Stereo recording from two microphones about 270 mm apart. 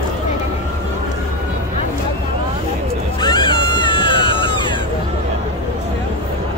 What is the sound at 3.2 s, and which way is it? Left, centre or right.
Screaming, centre.